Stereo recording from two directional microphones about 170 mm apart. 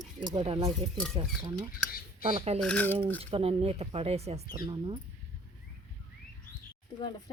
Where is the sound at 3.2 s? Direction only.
35° right (ahead or behind).